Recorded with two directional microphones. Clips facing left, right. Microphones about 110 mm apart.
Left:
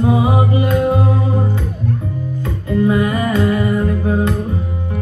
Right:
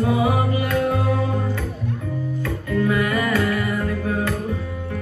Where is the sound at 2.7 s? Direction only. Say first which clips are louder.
Left 6 dB; 25° left (ahead or behind).